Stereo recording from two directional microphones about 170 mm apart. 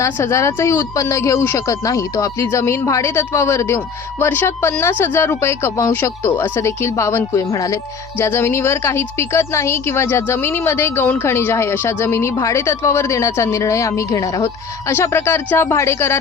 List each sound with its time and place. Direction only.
0.0 s speech: 15° left (ahead or behind)